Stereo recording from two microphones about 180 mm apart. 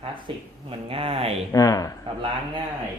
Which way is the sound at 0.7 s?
30° right (ahead or behind).